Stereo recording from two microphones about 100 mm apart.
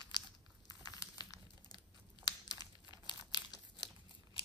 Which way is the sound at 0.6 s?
40° left (ahead or behind).